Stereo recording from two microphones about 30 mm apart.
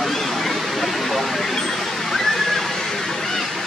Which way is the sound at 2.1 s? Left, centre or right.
Centre.